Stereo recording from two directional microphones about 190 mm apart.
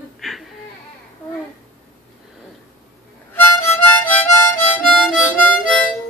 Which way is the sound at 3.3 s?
10° left (ahead or behind).